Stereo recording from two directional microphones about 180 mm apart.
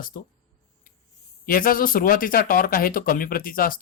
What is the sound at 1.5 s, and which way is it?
Speech, 50° left (ahead or behind).